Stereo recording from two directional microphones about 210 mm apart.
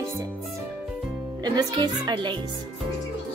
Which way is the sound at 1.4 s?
20° right (ahead or behind).